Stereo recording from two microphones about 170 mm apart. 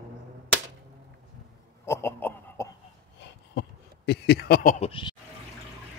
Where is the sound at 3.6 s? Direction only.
75° left (ahead or behind); by 4.9 s 50° left (ahead or behind).